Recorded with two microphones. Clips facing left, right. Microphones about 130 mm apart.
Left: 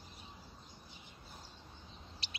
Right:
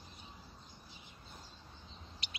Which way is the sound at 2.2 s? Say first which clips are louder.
Right 1 dB; 30° left (ahead or behind).